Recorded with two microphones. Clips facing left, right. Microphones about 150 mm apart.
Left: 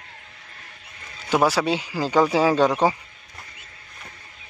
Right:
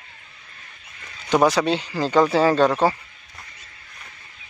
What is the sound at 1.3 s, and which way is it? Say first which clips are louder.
Speech: right 2 dB; 5° left (ahead or behind).